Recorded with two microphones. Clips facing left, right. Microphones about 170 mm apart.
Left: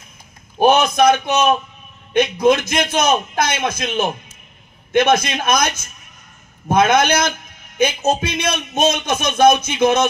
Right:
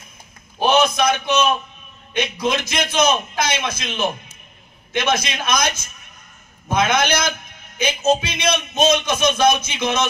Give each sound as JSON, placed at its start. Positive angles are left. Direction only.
{"t": 0.6, "sound": "a man's voice", "side_deg": 50}
{"t": 6.7, "sound": "a man's voice", "side_deg": 55}